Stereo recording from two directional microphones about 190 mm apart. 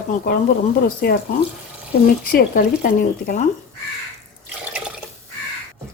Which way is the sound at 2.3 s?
50° left (ahead or behind).